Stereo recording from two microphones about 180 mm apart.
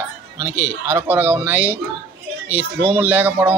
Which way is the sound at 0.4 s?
15° right (ahead or behind).